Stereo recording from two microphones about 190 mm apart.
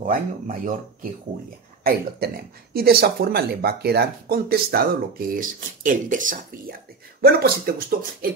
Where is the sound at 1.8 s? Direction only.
50° right (ahead or behind).